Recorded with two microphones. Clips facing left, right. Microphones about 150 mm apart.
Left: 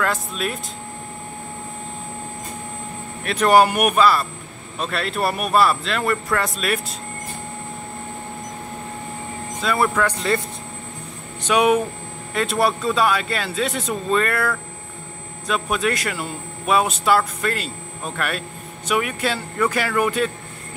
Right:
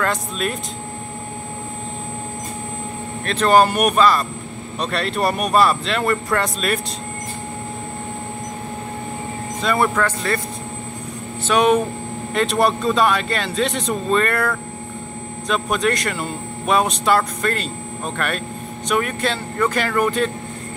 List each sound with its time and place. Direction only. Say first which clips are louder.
0.0 s speech: right 1 dB; 5° left (ahead or behind)
3.3 s speech: even; 10° left (ahead or behind)
9.6 s speech: right 1 dB; centre (ahead or behind)
10.0 s speech: left 1 dB; 15° left (ahead or behind)
11.4 s speech: right 1 dB; 10° left (ahead or behind)